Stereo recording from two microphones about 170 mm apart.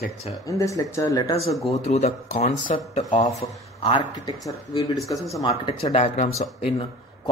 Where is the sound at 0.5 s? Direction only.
20° left (ahead or behind).